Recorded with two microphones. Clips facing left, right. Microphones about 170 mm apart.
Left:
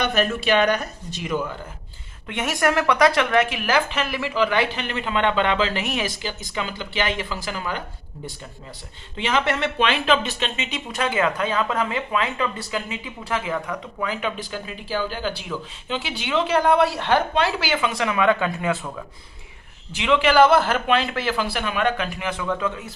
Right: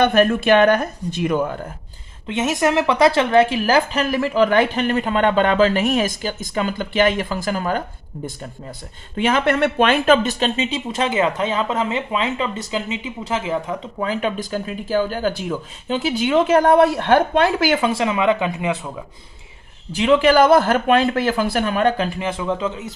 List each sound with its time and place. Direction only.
0.0 s speech: 55° right (ahead or behind)
2.2 s speech: 20° right (ahead or behind); by 7.9 s 45° right (ahead or behind)
9.1 s speech: 50° right (ahead or behind); by 19.0 s 15° right (ahead or behind)
20.0 s speech: 40° right (ahead or behind); by 22.9 s 25° right (ahead or behind)